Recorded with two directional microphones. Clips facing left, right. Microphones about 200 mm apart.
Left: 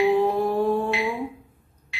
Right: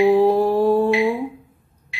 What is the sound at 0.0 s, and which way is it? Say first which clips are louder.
Mantra: right 6 dB; 40° right (ahead or behind).